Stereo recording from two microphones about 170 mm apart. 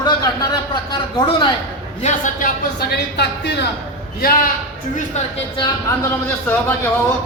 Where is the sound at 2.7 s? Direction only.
75° left (ahead or behind).